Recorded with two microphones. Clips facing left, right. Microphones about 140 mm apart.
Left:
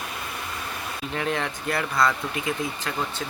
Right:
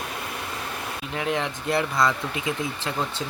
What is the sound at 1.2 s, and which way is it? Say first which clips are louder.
Speech: right 1 dB; 15° right (ahead or behind).